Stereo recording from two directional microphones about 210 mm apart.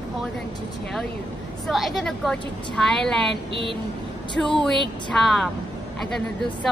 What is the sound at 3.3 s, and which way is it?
Child singing, 25° right (ahead or behind).